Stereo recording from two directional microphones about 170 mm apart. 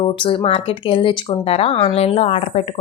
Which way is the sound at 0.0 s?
30° left (ahead or behind).